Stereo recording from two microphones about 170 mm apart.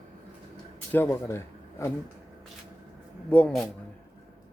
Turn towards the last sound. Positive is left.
turn(degrees=10)  # may be behind; listen again after turning